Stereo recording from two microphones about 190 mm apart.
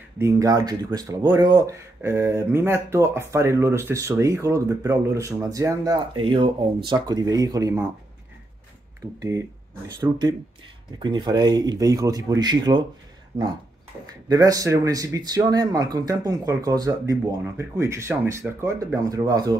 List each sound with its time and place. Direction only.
0.2 s speech: 15° right (ahead or behind)
9.9 s speech: 20° right (ahead or behind)
14.3 s speech: 20° right (ahead or behind)